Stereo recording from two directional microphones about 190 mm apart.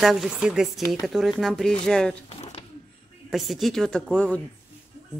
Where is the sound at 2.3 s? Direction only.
35° left (ahead or behind).